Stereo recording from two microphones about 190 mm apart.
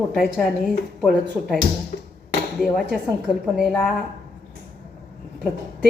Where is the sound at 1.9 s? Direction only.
50° left (ahead or behind).